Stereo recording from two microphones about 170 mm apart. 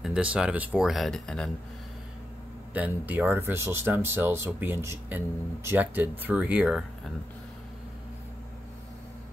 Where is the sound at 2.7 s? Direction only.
10° right (ahead or behind).